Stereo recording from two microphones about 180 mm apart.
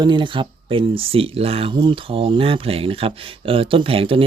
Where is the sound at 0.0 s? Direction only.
25° right (ahead or behind).